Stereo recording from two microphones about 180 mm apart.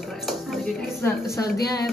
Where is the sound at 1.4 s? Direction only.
60° left (ahead or behind).